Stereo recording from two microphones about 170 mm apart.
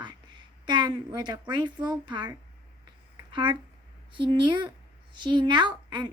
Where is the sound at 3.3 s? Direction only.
25° right (ahead or behind).